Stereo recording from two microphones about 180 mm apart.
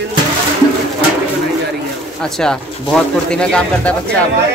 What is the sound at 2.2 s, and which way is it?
Speech, 5° left (ahead or behind).